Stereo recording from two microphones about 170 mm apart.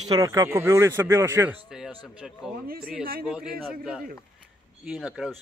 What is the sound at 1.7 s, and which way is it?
Speech, 5° right (ahead or behind).